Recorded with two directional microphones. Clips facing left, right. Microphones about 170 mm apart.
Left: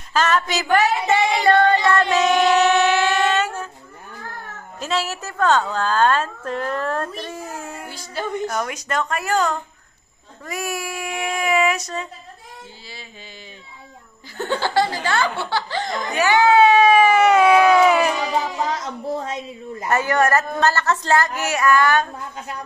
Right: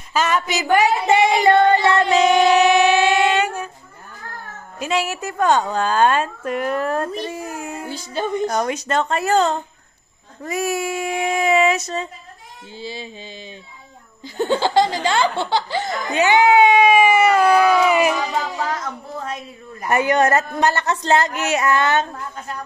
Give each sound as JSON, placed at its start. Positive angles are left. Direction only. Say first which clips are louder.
{"t": 0.1, "sound": "a sound", "louder": "even", "side_deg": -10}
{"t": 4.7, "sound": "a woman's voice", "louder": "right 2 dB", "side_deg": -15}
{"t": 14.3, "sound": "a woman's voice", "louder": "right 4 dB", "side_deg": -15}
{"t": 17.3, "sound": "speech", "louder": "left 1 dB", "side_deg": 0}
{"t": 19.2, "sound": "a woman's voice", "louder": "left 2 dB", "side_deg": 20}
{"t": 19.9, "sound": "a woman's voice", "louder": "right 2 dB", "side_deg": -20}